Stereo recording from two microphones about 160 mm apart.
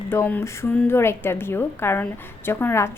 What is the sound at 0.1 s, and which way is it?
A woman's voice, 15° left (ahead or behind).